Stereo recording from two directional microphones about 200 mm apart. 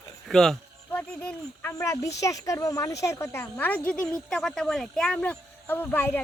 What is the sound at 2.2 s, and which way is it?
A child's voice, 15° left (ahead or behind).